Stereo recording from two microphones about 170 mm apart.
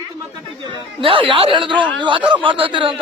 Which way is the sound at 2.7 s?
30° right (ahead or behind).